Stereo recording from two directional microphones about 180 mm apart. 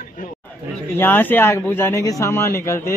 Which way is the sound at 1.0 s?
10° left (ahead or behind).